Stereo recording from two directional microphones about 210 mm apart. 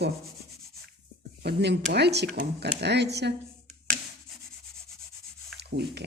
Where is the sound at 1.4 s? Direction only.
50° right (ahead or behind).